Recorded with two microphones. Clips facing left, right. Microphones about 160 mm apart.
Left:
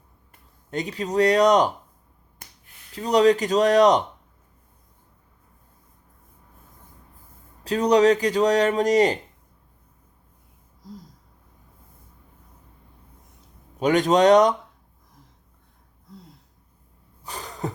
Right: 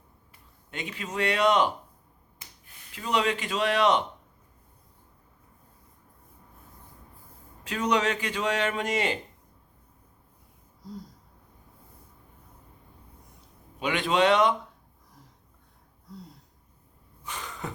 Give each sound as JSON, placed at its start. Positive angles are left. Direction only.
{"t": 0.3, "sound": "speech", "side_deg": 40}
{"t": 2.9, "sound": "speech", "side_deg": 40}
{"t": 7.6, "sound": "speech", "side_deg": 35}
{"t": 13.7, "sound": "speech", "side_deg": 40}
{"t": 17.2, "sound": "a sound", "side_deg": 35}